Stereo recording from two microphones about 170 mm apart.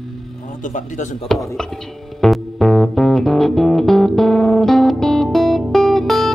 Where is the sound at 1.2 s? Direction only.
Centre (ahead or behind).